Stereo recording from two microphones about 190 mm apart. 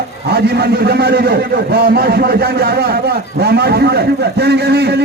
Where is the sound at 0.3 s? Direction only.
60° right (ahead or behind).